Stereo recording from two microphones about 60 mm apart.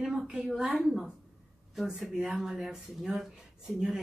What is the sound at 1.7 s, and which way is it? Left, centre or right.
Speech, centre.